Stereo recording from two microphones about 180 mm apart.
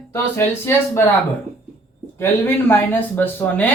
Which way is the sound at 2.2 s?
10° left (ahead or behind).